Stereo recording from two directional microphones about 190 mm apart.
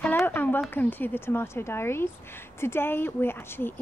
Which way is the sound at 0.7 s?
10° left (ahead or behind).